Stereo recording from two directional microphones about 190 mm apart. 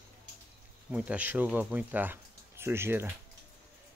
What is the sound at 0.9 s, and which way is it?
Speech, 5° right (ahead or behind).